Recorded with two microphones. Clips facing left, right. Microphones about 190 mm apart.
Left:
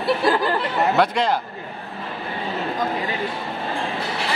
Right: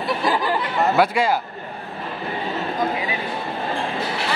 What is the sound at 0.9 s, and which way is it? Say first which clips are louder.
Speech: right 2 dB; 5° right (ahead or behind).